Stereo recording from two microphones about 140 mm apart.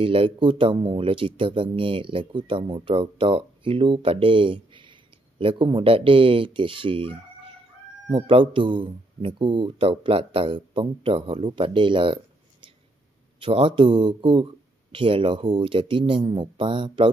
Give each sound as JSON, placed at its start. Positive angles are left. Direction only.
{"t": 0.0, "sound": "speech", "side_deg": -40}
{"t": 13.4, "sound": "speech", "side_deg": -40}